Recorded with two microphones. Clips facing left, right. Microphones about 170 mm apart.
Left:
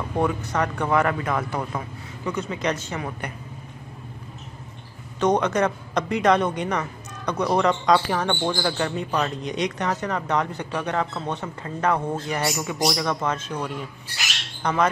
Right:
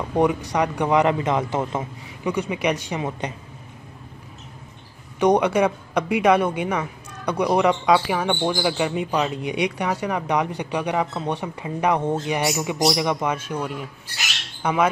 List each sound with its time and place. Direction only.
0.1 s speech: 15° right (ahead or behind)
5.2 s speech: 15° right (ahead or behind)